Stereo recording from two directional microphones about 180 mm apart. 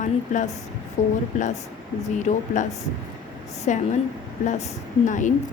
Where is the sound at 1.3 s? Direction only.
45° left (ahead or behind).